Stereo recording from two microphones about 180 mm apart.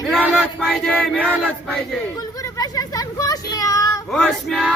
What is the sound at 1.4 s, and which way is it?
Male singing, centre (ahead or behind).